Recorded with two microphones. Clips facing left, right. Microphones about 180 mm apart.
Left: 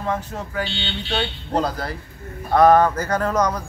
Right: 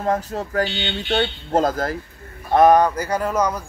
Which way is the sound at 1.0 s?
50° right (ahead or behind).